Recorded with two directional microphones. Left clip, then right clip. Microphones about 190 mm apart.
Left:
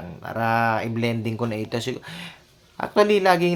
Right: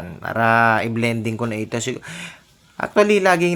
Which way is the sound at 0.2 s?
20° right (ahead or behind).